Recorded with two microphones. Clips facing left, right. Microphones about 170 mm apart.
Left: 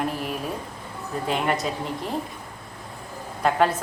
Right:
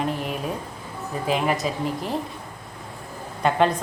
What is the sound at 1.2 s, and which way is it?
Speech, 5° right (ahead or behind).